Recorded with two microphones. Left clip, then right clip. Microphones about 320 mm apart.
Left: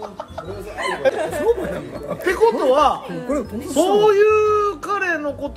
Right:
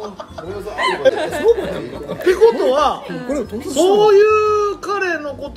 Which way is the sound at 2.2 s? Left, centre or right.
Left.